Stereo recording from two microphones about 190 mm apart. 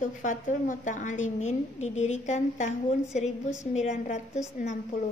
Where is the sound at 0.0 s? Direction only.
40° left (ahead or behind).